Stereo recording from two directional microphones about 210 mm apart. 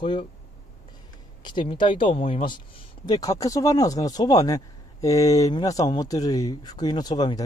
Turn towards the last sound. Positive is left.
turn(degrees=20)  # may be behind; listen again after turning